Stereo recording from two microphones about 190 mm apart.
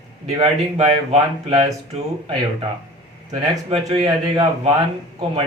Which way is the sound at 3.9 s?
30° right (ahead or behind).